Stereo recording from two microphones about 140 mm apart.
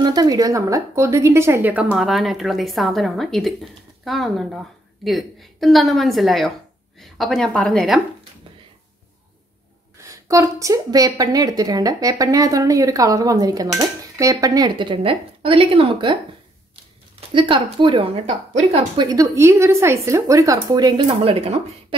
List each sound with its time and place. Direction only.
0.0 s a woman's voice: 30° right (ahead or behind); by 1.9 s 10° right (ahead or behind)
2.0 s speech: centre (ahead or behind)
10.0 s a woman's voice: 20° right (ahead or behind)
18.2 s a woman's voice: 55° right (ahead or behind)
18.9 s a woman's voice: 25° right (ahead or behind)
21.2 s speech: 45° right (ahead or behind)